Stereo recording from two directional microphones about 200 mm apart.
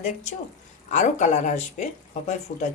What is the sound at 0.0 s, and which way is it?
Speech, 35° left (ahead or behind).